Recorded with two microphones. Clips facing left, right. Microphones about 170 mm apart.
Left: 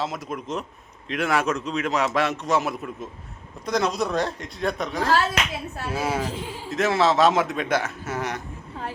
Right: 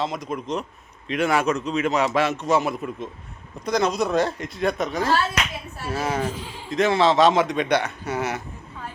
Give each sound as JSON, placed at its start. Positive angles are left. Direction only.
{"t": 0.0, "sound": "a man's voice", "side_deg": 0}